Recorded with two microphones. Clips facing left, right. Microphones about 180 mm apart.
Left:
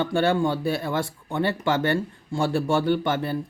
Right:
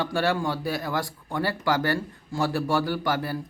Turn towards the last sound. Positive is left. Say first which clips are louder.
# left 4 dB
turn(degrees=25)  # may be behind; listen again after turning